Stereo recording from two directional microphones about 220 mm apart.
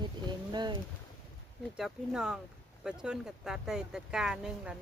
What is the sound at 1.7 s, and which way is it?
Speech, centre (ahead or behind).